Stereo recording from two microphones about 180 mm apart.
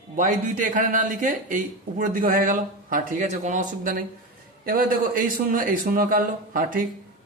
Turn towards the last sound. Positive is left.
turn(degrees=-50)  # may be behind; listen again after turning